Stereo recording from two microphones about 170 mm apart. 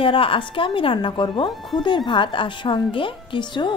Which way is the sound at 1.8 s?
30° left (ahead or behind).